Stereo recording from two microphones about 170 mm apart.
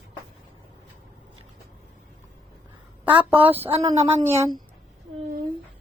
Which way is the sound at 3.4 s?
35° right (ahead or behind).